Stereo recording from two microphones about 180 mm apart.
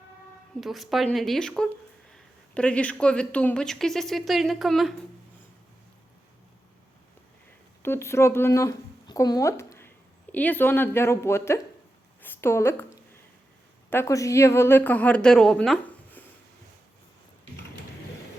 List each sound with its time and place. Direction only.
0.6 s speech: centre (ahead or behind)
7.8 s a woman's voice: 15° left (ahead or behind)
12.2 s a sound: 10° left (ahead or behind)
13.9 s a woman's voice: 15° left (ahead or behind)